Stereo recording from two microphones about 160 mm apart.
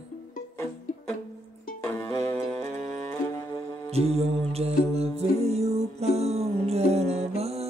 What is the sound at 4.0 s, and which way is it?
Music, 40° right (ahead or behind).